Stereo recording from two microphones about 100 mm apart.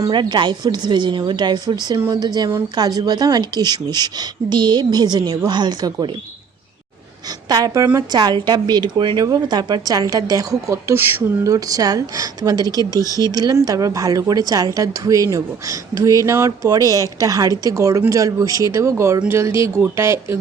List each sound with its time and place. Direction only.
0.1 s a woman's voice: 50° right (ahead or behind)
7.3 s a woman's voice: 40° right (ahead or behind); by 11.5 s 25° right (ahead or behind)
11.5 s a woman's voice: 35° right (ahead or behind)
12.9 s speech: 35° left (ahead or behind)
13.3 s a woman's voice: 40° right (ahead or behind)